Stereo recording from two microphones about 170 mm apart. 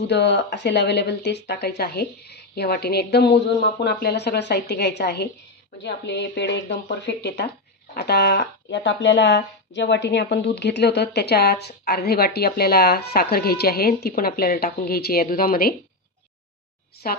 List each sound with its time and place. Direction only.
0.1 s speech: 90° left
5.8 s speech: 85° left; by 15.7 s 60° left (ahead or behind)